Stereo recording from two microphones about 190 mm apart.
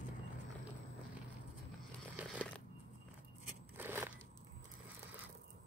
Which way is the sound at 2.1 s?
5° right (ahead or behind).